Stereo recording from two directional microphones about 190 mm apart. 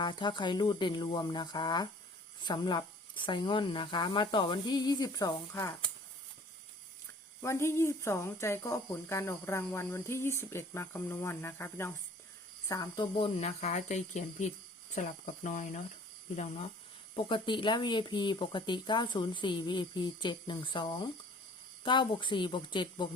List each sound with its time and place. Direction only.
0.0 s speech: 25° left (ahead or behind)
7.4 s speech: 15° left (ahead or behind)